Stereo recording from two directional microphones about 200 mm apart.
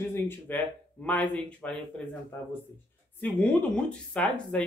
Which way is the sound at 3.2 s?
5° left (ahead or behind).